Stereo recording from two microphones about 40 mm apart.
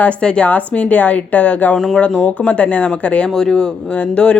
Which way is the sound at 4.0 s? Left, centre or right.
Left.